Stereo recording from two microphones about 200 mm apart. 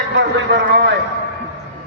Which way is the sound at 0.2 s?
60° right (ahead or behind).